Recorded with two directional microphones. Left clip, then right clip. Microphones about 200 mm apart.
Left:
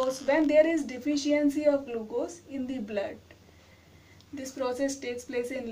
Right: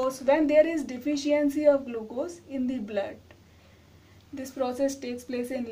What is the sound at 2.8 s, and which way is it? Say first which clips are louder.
Speech: left 1 dB; 30° right (ahead or behind).